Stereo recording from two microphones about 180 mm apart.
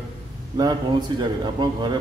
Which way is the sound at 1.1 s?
25° right (ahead or behind).